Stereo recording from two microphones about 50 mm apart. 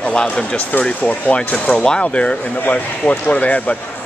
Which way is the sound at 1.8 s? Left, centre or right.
Centre.